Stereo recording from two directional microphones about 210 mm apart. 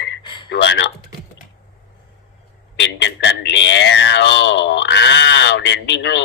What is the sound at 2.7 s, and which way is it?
Speech, 55° left (ahead or behind).